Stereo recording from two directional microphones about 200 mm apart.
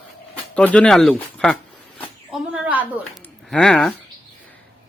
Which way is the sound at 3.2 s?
5° left (ahead or behind).